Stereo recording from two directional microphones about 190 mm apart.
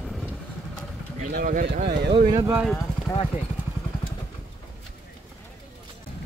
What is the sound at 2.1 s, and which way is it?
Speech, 25° right (ahead or behind).